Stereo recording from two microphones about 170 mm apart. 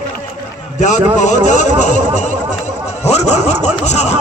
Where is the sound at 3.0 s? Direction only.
40° left (ahead or behind).